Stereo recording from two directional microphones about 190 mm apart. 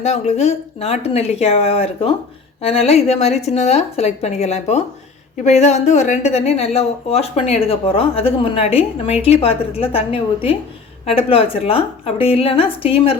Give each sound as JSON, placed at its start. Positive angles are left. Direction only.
{"t": 0.0, "sound": "a woman's voice", "side_deg": 35}